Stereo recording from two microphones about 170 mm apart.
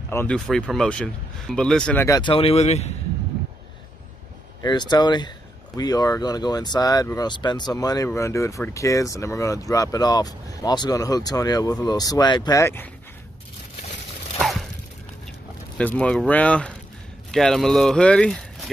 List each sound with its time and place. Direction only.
0.1 s speech: 15° left (ahead or behind)
0.5 s speech: 5° left (ahead or behind); by 2.3 s 20° left (ahead or behind)
2.3 s speech: 35° left (ahead or behind)
4.6 s speech: 25° left (ahead or behind)
14.4 s a sound: centre (ahead or behind)
15.8 s speech: 5° left (ahead or behind)